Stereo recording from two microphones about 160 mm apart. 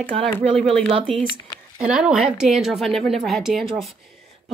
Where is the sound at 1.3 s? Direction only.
25° left (ahead or behind).